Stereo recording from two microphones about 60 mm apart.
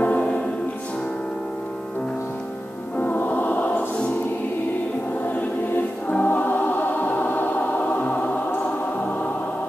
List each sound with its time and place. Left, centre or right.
0.0 s music: left
3.0 s music: left
6.0 s music: left